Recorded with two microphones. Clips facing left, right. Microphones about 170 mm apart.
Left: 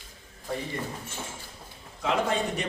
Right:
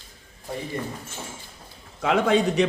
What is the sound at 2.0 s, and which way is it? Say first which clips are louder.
Speech: right 6 dB; 70° right (ahead or behind).